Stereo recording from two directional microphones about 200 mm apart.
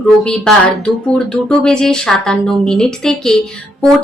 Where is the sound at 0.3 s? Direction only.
Centre (ahead or behind).